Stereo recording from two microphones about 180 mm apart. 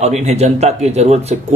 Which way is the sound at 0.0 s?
40° right (ahead or behind).